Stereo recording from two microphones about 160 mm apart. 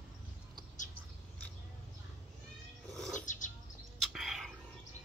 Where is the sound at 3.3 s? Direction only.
50° left (ahead or behind).